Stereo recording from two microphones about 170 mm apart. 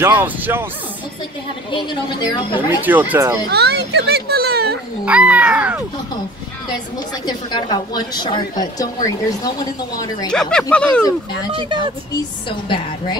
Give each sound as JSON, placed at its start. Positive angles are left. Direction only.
{"t": 0.0, "sound": "speech", "side_deg": -10}
{"t": 1.7, "sound": "a woman's voice", "side_deg": 30}
{"t": 2.8, "sound": "speech", "side_deg": -10}
{"t": 3.4, "sound": "a child's voice", "side_deg": -75}
{"t": 5.0, "sound": "speech", "side_deg": -5}
{"t": 7.2, "sound": "a woman's voice", "side_deg": 25}
{"t": 10.3, "sound": "speech", "side_deg": 5}
{"t": 11.5, "sound": "speech", "side_deg": -30}
{"t": 12.4, "sound": "a woman's voice", "side_deg": 30}